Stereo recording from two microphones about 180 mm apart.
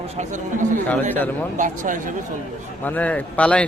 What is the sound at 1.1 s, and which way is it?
Speech, 10° left (ahead or behind).